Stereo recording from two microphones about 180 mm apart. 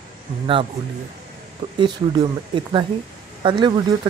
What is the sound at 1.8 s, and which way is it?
Speech, 25° right (ahead or behind).